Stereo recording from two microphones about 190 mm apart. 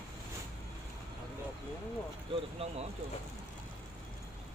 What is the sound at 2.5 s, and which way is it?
Speech, 35° right (ahead or behind).